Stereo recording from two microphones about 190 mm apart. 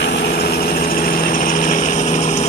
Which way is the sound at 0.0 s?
60° left (ahead or behind).